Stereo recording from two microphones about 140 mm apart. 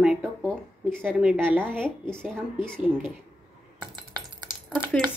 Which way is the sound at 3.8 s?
30° right (ahead or behind).